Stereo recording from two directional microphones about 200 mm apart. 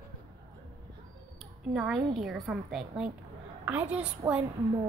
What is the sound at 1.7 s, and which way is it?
A woman's voice, 5° right (ahead or behind).